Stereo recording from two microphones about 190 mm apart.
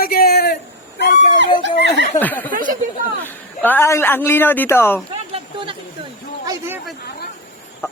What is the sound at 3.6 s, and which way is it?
A man's voice, 10° left (ahead or behind).